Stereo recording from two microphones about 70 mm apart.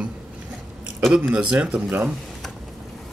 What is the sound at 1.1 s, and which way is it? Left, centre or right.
Speech, centre.